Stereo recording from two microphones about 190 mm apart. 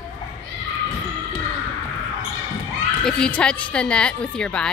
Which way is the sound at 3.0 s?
5° left (ahead or behind).